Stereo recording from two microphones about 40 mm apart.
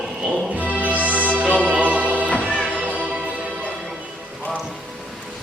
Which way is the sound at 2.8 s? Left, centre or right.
Right.